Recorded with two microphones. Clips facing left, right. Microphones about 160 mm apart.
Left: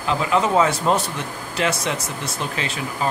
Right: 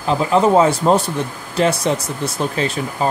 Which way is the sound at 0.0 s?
35° right (ahead or behind).